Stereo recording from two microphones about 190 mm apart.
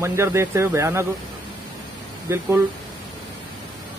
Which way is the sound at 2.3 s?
15° right (ahead or behind).